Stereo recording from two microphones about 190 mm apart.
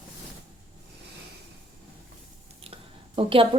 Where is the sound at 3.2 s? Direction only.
30° right (ahead or behind).